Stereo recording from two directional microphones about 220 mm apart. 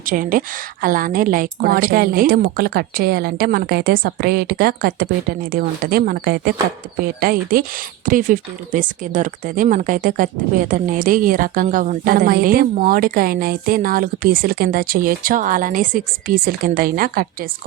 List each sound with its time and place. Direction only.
0.0 s a woman's voice: 40° right (ahead or behind)